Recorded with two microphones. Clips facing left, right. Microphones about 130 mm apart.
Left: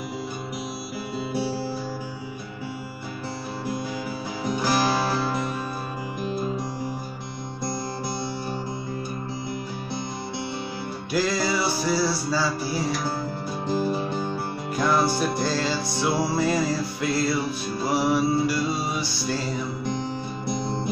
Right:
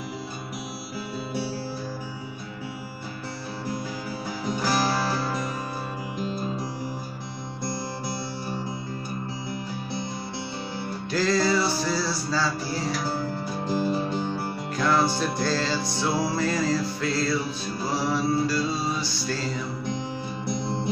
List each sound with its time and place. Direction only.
4.5 s music: 10° left (ahead or behind)
11.1 s music: 10° left (ahead or behind)
14.8 s music: 10° left (ahead or behind)